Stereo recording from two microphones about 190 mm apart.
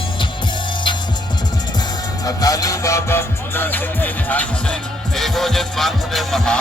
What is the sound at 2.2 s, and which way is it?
Music, 20° left (ahead or behind).